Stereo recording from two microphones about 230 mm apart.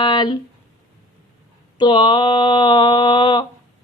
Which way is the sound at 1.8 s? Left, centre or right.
Centre.